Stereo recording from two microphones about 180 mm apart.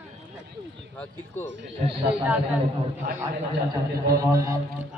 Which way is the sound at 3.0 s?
55° right (ahead or behind).